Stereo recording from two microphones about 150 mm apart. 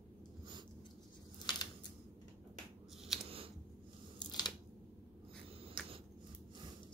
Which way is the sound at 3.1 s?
Centre (ahead or behind).